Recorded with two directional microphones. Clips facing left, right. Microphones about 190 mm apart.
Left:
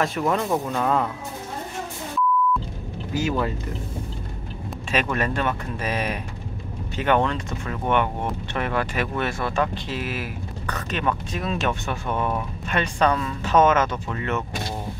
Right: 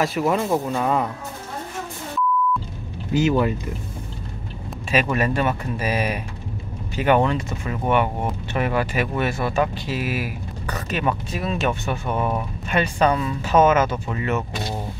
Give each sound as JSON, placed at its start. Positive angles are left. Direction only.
{"t": 0.0, "sound": "speech", "side_deg": -5}
{"t": 3.1, "sound": "speech", "side_deg": -20}
{"t": 4.9, "sound": "speech", "side_deg": -5}